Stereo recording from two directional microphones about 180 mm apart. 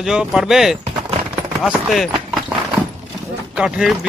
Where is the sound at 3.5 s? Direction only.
5° right (ahead or behind).